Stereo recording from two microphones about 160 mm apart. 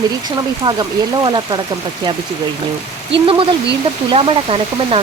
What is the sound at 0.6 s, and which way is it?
Speech, 25° right (ahead or behind).